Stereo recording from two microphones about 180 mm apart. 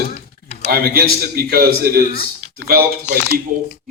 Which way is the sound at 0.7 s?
60° right (ahead or behind).